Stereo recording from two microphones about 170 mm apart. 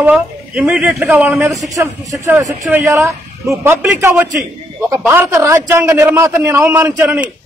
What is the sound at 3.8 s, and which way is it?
A man's voice, 10° right (ahead or behind).